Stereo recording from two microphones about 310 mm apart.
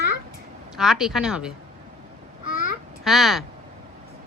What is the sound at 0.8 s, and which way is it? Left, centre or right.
Speech, centre.